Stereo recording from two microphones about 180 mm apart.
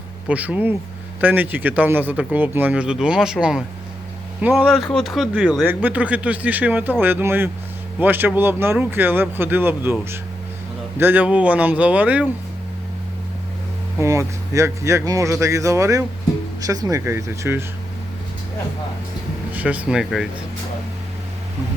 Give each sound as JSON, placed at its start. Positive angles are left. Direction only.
{"t": 0.3, "sound": "speech", "side_deg": -10}
{"t": 14.0, "sound": "speech", "side_deg": -15}
{"t": 19.5, "sound": "speech", "side_deg": -5}